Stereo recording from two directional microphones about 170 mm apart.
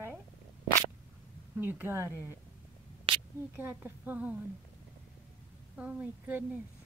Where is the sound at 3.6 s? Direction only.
10° right (ahead or behind).